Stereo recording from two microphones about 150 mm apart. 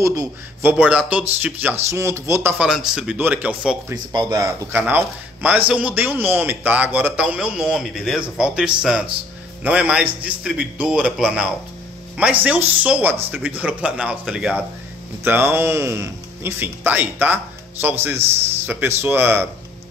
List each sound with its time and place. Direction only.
0.0 s speech: 20° right (ahead or behind)
2.6 s speech: 5° right (ahead or behind)
3.9 s speech: 25° right (ahead or behind); by 14.6 s 5° right (ahead or behind)
15.2 s speech: 15° right (ahead or behind)